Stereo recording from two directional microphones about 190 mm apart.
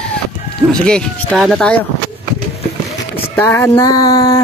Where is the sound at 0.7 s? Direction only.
5° left (ahead or behind).